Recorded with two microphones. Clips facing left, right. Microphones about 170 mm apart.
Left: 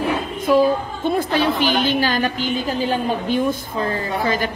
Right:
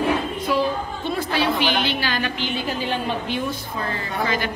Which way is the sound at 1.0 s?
50° left (ahead or behind).